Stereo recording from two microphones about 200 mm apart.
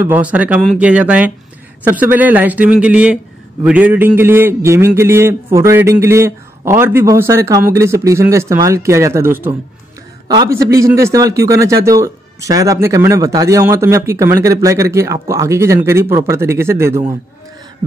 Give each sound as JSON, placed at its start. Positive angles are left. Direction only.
{"t": 0.0, "sound": "a man's voice", "side_deg": -10}